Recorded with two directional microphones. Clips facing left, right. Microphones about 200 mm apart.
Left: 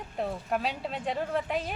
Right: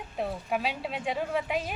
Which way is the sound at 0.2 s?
5° right (ahead or behind).